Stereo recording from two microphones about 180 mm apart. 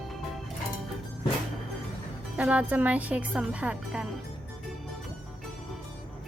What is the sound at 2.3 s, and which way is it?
Speech, 5° right (ahead or behind).